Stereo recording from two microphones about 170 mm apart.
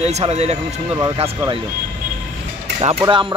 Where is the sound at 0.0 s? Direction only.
40° right (ahead or behind).